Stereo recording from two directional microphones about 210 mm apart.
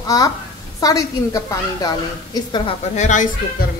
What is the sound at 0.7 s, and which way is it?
A woman's voice, 15° left (ahead or behind).